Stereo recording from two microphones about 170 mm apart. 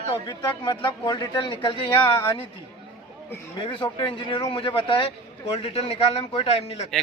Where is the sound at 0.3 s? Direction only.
25° left (ahead or behind).